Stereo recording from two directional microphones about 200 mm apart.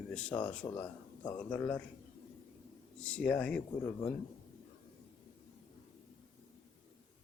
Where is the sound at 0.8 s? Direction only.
15° left (ahead or behind).